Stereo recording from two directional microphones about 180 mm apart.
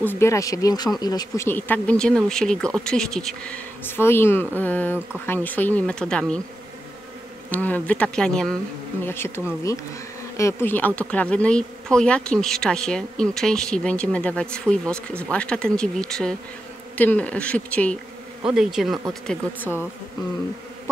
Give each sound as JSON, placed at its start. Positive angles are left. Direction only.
{"t": 0.0, "sound": "speech", "side_deg": 15}
{"t": 7.5, "sound": "speech", "side_deg": 10}
{"t": 18.4, "sound": "speech", "side_deg": -5}